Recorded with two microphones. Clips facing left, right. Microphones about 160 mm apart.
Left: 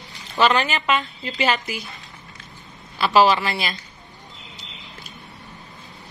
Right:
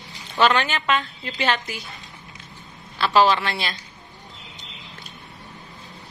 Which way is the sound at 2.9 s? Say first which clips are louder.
Left 1 dB; 10° left (ahead or behind).